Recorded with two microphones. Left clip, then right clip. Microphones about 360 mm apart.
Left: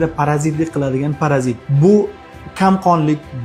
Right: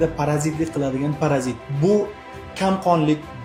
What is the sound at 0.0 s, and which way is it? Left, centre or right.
Speech, left.